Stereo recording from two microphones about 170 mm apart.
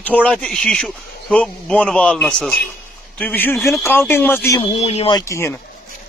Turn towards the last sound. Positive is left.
turn(degrees=15)  # may be behind; listen again after turning